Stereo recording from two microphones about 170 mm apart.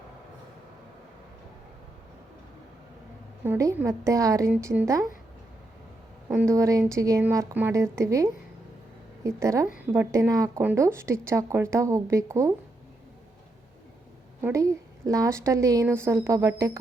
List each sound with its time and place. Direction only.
3.4 s a woman's voice: 15° right (ahead or behind)
6.3 s speech: 15° right (ahead or behind)
14.4 s speech: 20° right (ahead or behind)